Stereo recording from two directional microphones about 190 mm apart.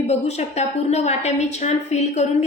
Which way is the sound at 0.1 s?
35° left (ahead or behind).